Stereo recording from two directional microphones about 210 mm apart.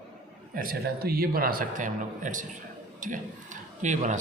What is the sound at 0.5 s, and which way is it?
Speech, 45° right (ahead or behind).